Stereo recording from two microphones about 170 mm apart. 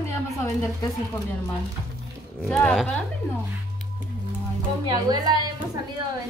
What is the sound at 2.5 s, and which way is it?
Speech, 5° left (ahead or behind).